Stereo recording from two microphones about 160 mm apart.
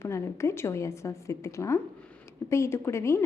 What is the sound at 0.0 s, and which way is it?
A woman's voice, 15° left (ahead or behind).